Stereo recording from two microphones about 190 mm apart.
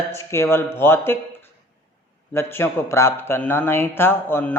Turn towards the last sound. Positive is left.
turn(degrees=10)  # may be behind; listen again after turning